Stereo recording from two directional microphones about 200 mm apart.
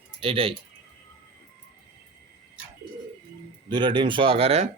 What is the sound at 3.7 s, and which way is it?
A man's voice, 20° right (ahead or behind).